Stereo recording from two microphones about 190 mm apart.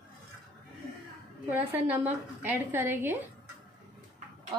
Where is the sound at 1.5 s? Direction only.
10° right (ahead or behind).